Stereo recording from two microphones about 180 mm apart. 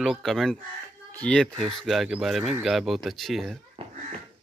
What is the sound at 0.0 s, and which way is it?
A child's voice, centre (ahead or behind).